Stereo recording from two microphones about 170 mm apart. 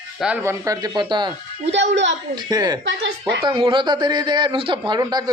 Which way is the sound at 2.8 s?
90° right.